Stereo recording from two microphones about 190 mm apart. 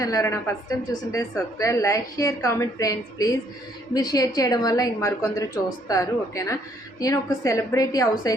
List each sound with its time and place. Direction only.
0.0 s a woman's voice: 15° left (ahead or behind)